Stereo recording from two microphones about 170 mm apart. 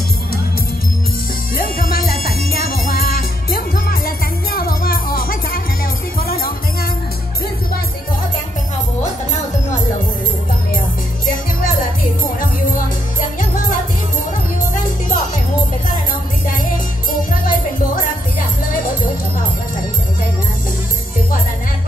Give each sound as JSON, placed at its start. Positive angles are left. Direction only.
{"t": 1.6, "sound": "music", "side_deg": 55}
{"t": 14.7, "sound": "music", "side_deg": 50}
{"t": 17.3, "sound": "music", "side_deg": 55}